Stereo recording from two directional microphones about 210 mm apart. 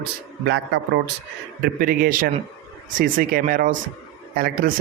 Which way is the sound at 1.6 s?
45° right (ahead or behind).